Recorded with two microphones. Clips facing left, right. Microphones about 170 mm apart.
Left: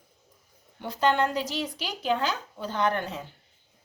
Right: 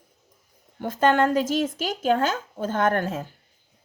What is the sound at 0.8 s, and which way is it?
Speech, 45° right (ahead or behind).